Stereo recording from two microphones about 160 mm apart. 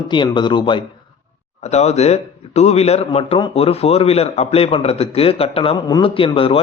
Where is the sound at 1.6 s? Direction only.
45° left (ahead or behind).